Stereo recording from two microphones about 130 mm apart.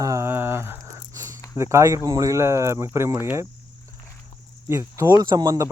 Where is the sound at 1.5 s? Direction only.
20° right (ahead or behind).